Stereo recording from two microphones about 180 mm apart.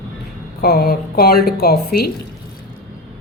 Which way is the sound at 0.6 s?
60° left (ahead or behind).